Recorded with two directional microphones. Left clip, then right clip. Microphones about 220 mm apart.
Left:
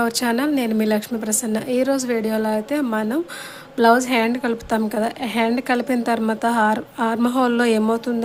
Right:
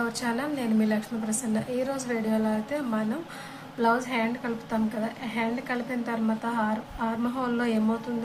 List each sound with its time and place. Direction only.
0.0 s a woman's voice: 45° left (ahead or behind)